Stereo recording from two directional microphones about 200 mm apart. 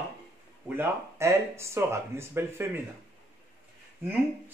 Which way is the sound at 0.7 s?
15° right (ahead or behind).